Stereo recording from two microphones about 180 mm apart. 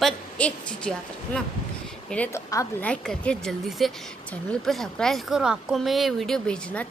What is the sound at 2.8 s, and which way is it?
Speech, 5° left (ahead or behind).